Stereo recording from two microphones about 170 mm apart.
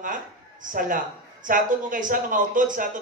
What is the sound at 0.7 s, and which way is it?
Speech, 50° right (ahead or behind).